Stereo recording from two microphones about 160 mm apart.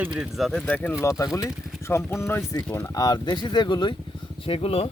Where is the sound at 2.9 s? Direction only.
25° left (ahead or behind).